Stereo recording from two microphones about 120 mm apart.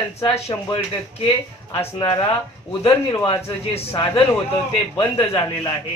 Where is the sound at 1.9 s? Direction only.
40° left (ahead or behind).